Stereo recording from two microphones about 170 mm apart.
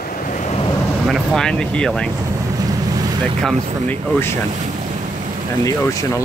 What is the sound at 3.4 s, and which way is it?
Speech, 5° left (ahead or behind).